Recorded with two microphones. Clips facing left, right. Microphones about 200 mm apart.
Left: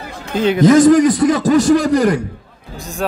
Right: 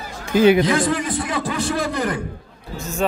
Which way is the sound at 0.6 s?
45° left (ahead or behind).